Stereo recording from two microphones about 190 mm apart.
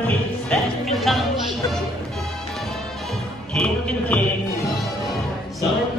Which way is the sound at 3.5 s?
5° left (ahead or behind).